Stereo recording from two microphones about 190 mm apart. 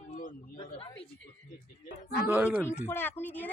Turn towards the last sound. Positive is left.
turn(degrees=10)  # may be behind; listen again after turning